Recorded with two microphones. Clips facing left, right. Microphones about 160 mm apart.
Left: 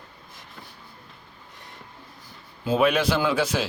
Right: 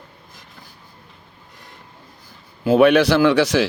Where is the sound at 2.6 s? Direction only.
80° right.